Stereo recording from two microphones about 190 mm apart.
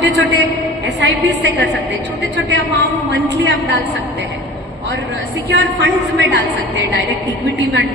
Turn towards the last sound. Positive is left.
turn(degrees=-70)  # may be behind; listen again after turning